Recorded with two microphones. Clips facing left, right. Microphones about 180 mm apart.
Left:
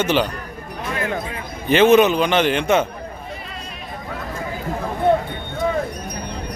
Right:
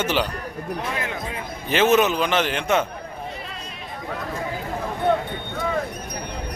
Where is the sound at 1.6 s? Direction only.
Centre (ahead or behind).